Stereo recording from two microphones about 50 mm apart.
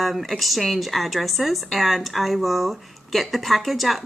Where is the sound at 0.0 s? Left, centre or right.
Centre.